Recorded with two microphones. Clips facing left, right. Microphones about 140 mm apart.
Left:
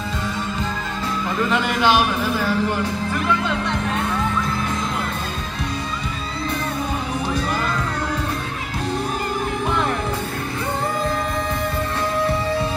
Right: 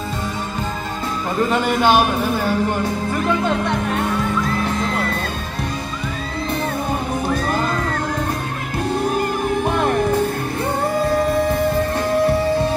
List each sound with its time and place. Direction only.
1.4 s speech: 45° right (ahead or behind)
9.7 s music: 50° right (ahead or behind)